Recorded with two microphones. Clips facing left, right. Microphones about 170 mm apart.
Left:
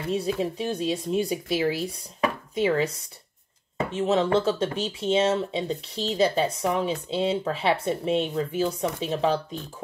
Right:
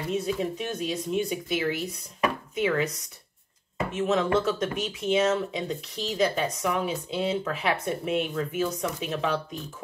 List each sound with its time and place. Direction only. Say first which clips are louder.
0.1 s speech: left 2 dB; 30° left (ahead or behind)
3.9 s speech: left 2 dB; 30° left (ahead or behind)